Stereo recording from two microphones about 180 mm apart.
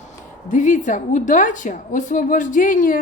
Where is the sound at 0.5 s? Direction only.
45° left (ahead or behind).